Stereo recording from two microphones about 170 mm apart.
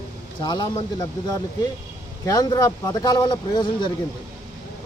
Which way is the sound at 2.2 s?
20° left (ahead or behind).